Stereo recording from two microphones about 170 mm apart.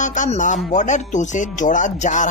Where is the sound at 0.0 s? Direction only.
45° left (ahead or behind).